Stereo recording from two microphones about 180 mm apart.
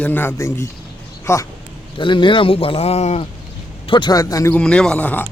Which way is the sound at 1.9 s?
25° left (ahead or behind).